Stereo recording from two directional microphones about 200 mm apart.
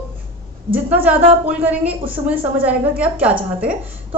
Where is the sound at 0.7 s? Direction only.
10° right (ahead or behind).